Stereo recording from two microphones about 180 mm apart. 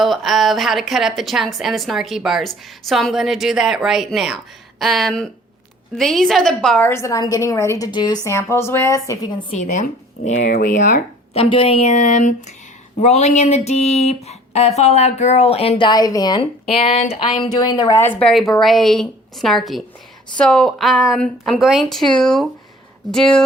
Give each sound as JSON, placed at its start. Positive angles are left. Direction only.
{"t": 0.0, "sound": "a woman's voice", "side_deg": 0}
{"t": 9.6, "sound": "speech", "side_deg": 40}
{"t": 11.4, "sound": "speech", "side_deg": 30}
{"t": 16.6, "sound": "a woman's voice", "side_deg": 35}